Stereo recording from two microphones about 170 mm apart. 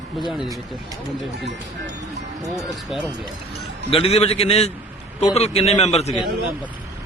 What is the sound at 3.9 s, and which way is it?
A man's voice, 35° left (ahead or behind).